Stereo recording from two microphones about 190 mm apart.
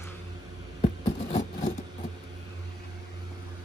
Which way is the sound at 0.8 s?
40° left (ahead or behind).